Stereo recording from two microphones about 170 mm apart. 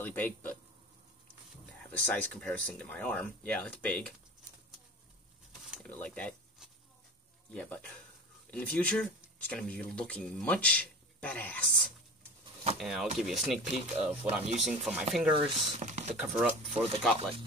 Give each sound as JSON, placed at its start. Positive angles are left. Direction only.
{"t": 0.0, "sound": "speech", "side_deg": 10}
{"t": 1.8, "sound": "speech", "side_deg": 10}
{"t": 5.7, "sound": "speech", "side_deg": 5}
{"t": 7.5, "sound": "speech", "side_deg": 5}
{"t": 14.4, "sound": "speech", "side_deg": -40}
{"t": 14.7, "sound": "speech", "side_deg": -5}
{"t": 15.3, "sound": "speech", "side_deg": -40}
{"t": 16.2, "sound": "speech", "side_deg": -5}
{"t": 16.7, "sound": "speech", "side_deg": -35}